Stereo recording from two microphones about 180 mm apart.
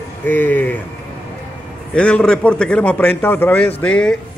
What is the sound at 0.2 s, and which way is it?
Speech, 10° left (ahead or behind).